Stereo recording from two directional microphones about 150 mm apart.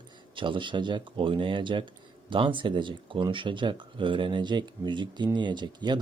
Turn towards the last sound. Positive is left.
turn(degrees=-30)  # may be behind; listen again after turning